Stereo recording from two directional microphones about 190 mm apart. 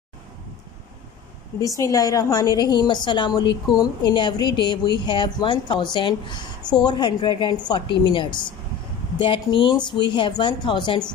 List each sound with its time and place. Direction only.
1.6 s speech: 15° left (ahead or behind)